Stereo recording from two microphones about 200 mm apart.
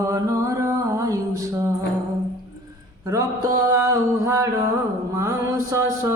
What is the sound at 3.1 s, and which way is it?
Music, 15° right (ahead or behind).